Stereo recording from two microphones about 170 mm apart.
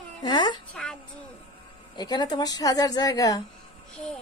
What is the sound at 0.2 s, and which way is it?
Speech, 25° left (ahead or behind).